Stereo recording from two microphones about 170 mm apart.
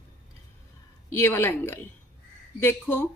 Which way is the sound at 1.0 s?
15° left (ahead or behind).